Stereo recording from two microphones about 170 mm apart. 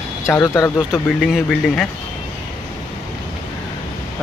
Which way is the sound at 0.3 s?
15° left (ahead or behind).